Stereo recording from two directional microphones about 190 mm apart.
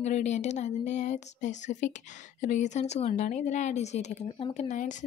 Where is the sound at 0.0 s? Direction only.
35° left (ahead or behind).